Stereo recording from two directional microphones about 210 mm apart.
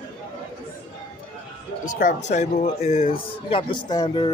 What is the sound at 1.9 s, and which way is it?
A man's voice, 40° left (ahead or behind).